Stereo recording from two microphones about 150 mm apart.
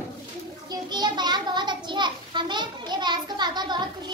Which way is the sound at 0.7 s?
30° right (ahead or behind).